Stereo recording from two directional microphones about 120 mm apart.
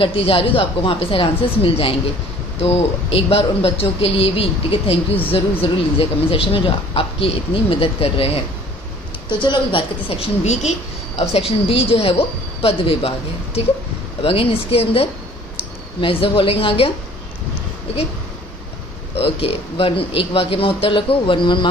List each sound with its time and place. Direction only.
0.0 s speech: 50° left (ahead or behind)
9.3 s speech: 45° left (ahead or behind)
10.2 s a woman's voice: 70° left (ahead or behind)
11.1 s a woman's voice: 55° left (ahead or behind)
14.2 s speech: 50° left (ahead or behind)
19.1 s speech: 55° left (ahead or behind)